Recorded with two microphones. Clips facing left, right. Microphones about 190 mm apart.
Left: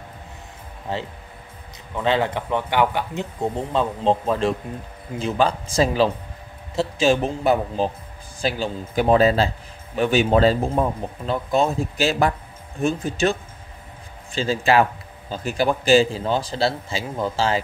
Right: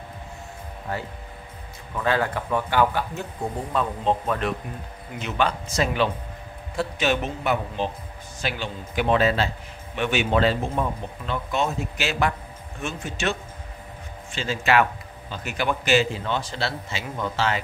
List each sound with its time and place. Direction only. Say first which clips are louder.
0.9 s a man's voice: left 3 dB; 20° left (ahead or behind)